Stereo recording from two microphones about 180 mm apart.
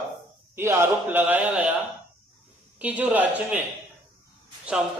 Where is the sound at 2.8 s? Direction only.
10° right (ahead or behind).